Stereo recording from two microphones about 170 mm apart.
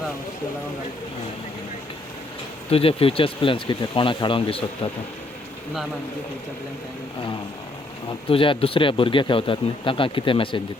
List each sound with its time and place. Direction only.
2.6 s speech: 35° left (ahead or behind)
8.3 s speech: 30° left (ahead or behind)